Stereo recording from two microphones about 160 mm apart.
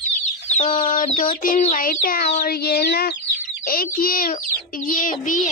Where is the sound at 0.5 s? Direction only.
35° left (ahead or behind).